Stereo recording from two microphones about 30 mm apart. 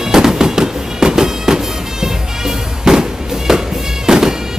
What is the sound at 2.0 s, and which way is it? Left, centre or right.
Music, centre.